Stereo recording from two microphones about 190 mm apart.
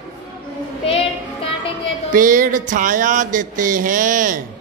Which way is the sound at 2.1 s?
45° right (ahead or behind).